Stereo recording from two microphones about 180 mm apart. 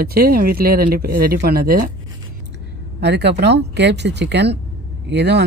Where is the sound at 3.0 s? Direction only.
70° right (ahead or behind).